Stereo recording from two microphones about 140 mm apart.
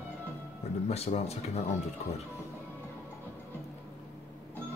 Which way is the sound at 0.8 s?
50° left (ahead or behind).